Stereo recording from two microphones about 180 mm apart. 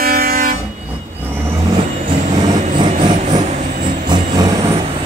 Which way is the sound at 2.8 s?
25° right (ahead or behind).